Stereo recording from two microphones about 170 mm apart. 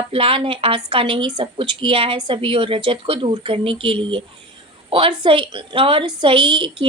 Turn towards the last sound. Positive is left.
turn(degrees=-30)  # may be behind; listen again after turning